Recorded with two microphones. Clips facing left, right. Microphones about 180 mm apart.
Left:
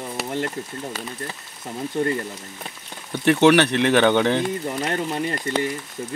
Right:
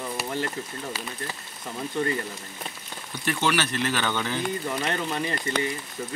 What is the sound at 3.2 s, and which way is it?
Speech, 65° left (ahead or behind).